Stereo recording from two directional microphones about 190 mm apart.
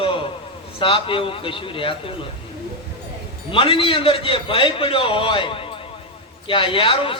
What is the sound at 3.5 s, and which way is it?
A man's voice, 25° left (ahead or behind).